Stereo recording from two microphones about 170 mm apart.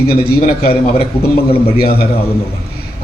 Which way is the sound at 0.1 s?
65° left (ahead or behind).